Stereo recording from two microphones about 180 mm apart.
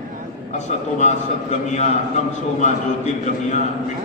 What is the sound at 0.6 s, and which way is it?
Speech, 40° left (ahead or behind).